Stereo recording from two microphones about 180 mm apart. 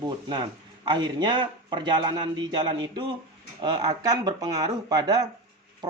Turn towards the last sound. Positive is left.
turn(degrees=-25)  # may be behind; listen again after turning